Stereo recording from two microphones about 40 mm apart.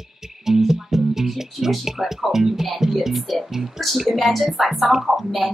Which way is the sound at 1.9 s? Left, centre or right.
Centre.